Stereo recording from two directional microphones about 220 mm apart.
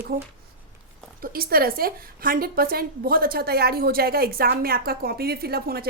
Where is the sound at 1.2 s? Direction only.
40° right (ahead or behind).